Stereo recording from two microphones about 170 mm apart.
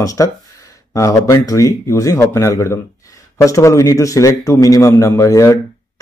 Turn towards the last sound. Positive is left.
turn(degrees=20)  # may be behind; listen again after turning